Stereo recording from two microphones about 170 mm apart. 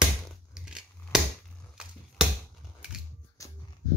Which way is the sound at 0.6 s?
5° right (ahead or behind).